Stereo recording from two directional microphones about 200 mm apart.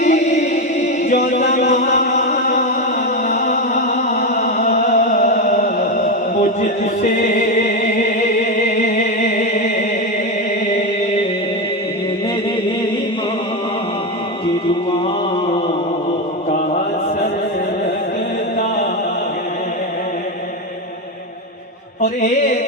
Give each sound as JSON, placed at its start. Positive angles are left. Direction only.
{"t": 0.0, "sound": "chant", "side_deg": 35}
{"t": 3.2, "sound": "music", "side_deg": 40}
{"t": 22.0, "sound": "mantra", "side_deg": 40}